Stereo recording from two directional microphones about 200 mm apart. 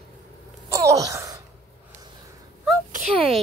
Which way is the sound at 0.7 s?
15° right (ahead or behind).